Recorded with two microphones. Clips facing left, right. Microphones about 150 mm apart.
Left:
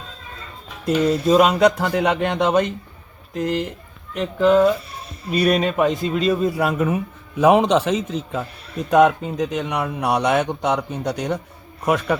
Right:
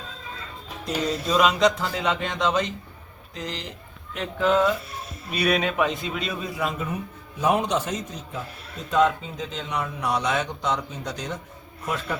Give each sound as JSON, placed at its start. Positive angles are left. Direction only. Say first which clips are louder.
{"t": 1.3, "sound": "speech", "louder": "left 5 dB", "side_deg": 50}
{"t": 4.4, "sound": "a man's voice", "louder": "left 6 dB", "side_deg": 40}
{"t": 4.9, "sound": "a sound", "louder": "left 7 dB", "side_deg": 0}
{"t": 5.6, "sound": "a man's voice", "louder": "left 5 dB", "side_deg": 40}
{"t": 6.6, "sound": "a man's voice", "louder": "left 8 dB", "side_deg": 75}